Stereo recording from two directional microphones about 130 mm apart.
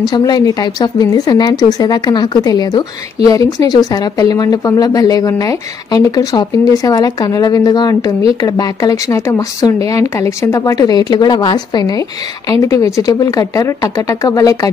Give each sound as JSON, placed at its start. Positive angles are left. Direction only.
{"t": 0.0, "sound": "a woman's voice", "side_deg": 35}